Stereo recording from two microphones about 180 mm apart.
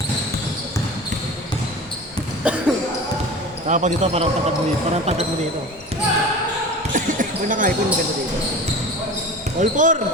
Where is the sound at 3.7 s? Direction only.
40° right (ahead or behind).